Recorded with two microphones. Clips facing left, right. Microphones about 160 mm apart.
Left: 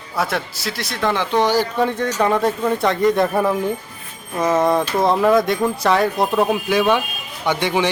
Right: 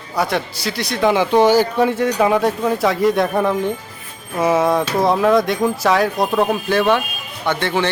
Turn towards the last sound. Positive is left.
turn(degrees=15)  # may be behind; listen again after turning